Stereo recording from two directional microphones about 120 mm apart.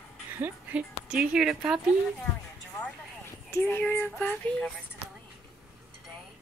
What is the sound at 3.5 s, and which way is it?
Child singing, 20° left (ahead or behind).